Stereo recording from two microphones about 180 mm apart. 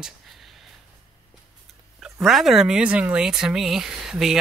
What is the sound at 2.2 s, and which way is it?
Speech, centre (ahead or behind).